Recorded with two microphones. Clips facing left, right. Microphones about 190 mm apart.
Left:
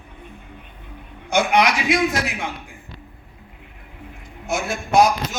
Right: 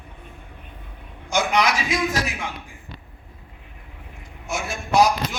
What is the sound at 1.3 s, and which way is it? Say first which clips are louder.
Speech: left 3 dB; 55° left (ahead or behind).